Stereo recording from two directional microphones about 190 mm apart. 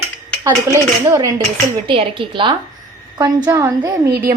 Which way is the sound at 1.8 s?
30° right (ahead or behind).